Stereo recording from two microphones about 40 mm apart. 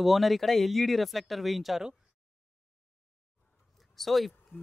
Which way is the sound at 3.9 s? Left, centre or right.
Centre.